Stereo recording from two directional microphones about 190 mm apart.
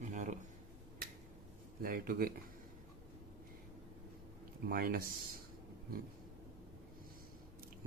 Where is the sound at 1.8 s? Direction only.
50° right (ahead or behind).